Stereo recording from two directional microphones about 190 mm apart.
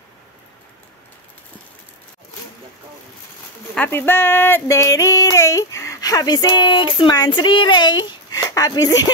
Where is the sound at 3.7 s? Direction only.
10° left (ahead or behind).